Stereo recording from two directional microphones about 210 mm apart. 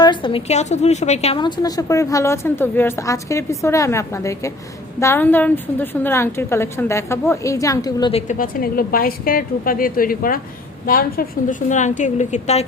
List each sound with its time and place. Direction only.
0.0 s a woman's voice: 20° left (ahead or behind)
8.1 s a woman's voice: 40° left (ahead or behind)